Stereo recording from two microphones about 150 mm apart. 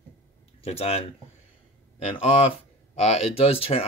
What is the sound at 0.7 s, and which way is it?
Speech, 40° left (ahead or behind).